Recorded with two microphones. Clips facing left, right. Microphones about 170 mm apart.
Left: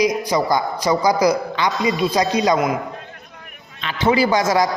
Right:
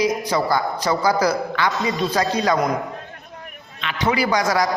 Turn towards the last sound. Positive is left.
turn(degrees=25)  # may be behind; listen again after turning